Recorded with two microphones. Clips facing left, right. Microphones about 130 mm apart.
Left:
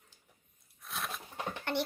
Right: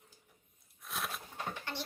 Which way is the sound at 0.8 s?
Centre (ahead or behind).